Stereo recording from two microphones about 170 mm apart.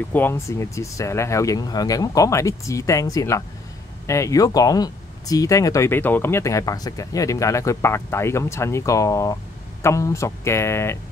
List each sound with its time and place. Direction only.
0.1 s speech: 15° left (ahead or behind)